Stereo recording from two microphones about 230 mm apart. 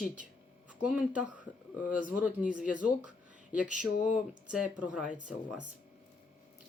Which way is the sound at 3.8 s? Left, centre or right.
Left.